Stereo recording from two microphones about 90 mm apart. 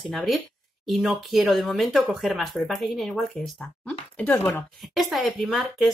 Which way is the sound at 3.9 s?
20° left (ahead or behind).